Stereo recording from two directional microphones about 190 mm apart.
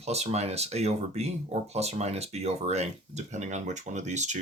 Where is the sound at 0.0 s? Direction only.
35° right (ahead or behind).